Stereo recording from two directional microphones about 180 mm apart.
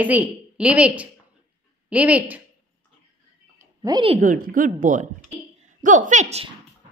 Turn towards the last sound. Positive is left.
turn(degrees=-35)  # may be behind; listen again after turning